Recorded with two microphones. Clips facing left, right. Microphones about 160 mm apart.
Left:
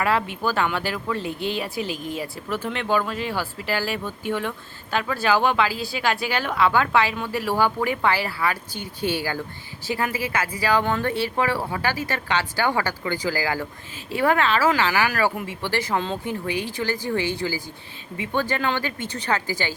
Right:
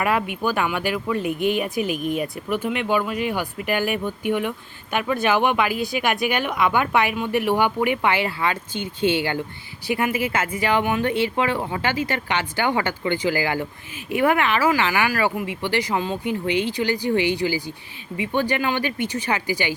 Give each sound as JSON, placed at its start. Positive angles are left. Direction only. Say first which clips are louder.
{"t": 0.0, "sound": "speech", "louder": "right 1 dB", "side_deg": -15}